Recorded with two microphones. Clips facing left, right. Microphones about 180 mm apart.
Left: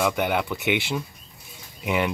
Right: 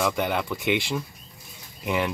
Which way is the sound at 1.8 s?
5° left (ahead or behind).